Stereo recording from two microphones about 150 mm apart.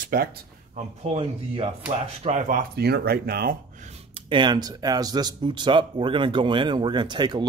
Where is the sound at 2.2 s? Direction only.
55° right (ahead or behind); by 3.5 s 90° right.